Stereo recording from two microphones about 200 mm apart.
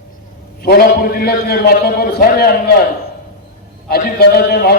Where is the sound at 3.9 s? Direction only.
50° left (ahead or behind).